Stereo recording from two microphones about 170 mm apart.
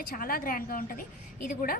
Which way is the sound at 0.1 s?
55° left (ahead or behind).